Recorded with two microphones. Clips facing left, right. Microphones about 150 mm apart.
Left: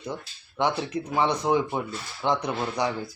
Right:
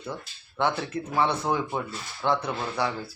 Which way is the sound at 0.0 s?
15° left (ahead or behind).